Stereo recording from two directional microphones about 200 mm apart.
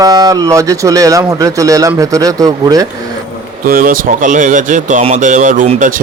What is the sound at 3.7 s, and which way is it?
Speech, 45° right (ahead or behind).